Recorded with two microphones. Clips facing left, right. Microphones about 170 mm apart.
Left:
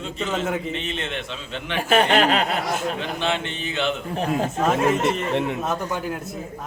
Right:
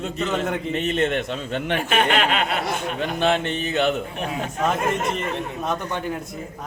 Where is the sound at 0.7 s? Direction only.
45° right (ahead or behind).